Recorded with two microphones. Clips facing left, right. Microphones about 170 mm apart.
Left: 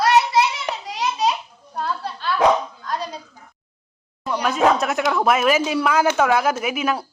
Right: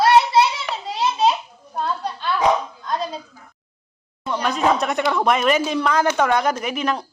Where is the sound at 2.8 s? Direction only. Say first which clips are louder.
Right 2 dB; 20° right (ahead or behind).